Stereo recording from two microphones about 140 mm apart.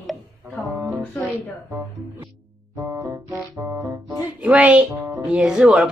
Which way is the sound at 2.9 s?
20° right (ahead or behind).